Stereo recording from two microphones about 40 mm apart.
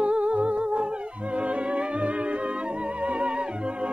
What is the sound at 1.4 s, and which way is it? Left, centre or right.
Music, right.